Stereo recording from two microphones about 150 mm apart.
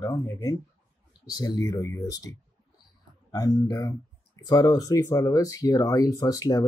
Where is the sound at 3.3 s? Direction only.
25° left (ahead or behind).